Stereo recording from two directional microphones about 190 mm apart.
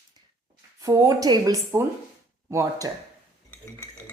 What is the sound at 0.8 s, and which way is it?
A woman's voice, 15° right (ahead or behind).